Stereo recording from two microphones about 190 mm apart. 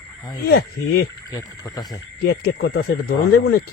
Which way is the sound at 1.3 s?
20° left (ahead or behind).